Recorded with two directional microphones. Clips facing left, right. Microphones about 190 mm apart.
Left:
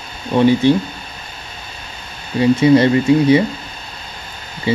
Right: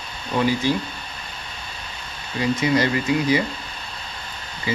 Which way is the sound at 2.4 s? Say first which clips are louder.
Left 9 dB; 30° left (ahead or behind).